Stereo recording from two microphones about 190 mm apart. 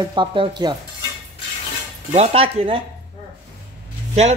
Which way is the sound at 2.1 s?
30° right (ahead or behind).